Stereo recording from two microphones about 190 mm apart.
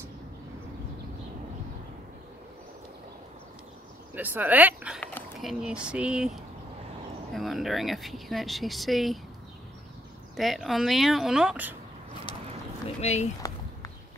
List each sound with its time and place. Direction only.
4.1 s speech: 10° right (ahead or behind)
10.3 s speech: centre (ahead or behind)
12.8 s speech: 35° left (ahead or behind)